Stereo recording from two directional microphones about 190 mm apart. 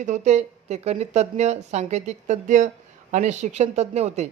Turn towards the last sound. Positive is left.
turn(degrees=-35)  # may be behind; listen again after turning